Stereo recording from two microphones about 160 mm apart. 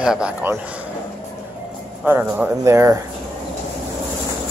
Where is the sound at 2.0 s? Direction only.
15° right (ahead or behind).